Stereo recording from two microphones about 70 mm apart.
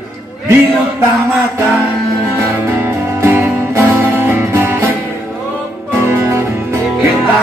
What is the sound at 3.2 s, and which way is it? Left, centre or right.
Music, right.